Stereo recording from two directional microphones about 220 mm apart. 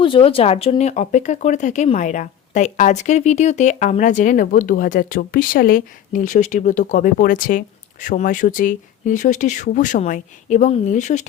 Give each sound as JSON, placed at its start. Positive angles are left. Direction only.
{"t": 0.0, "sound": "speech", "side_deg": 25}